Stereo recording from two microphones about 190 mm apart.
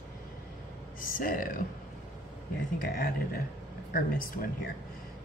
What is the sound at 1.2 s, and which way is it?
Speech, 45° left (ahead or behind).